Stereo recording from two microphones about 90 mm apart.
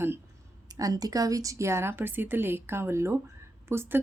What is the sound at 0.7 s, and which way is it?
A woman's voice, 40° right (ahead or behind).